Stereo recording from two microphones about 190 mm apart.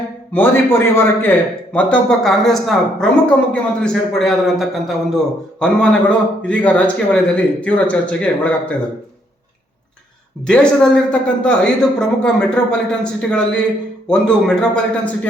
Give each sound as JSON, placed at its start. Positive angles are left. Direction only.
{"t": 0.3, "sound": "a man's voice", "side_deg": 10}
{"t": 10.4, "sound": "a man's voice", "side_deg": 5}